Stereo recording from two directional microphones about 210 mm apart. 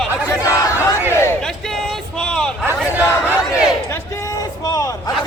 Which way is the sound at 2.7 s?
10° right (ahead or behind).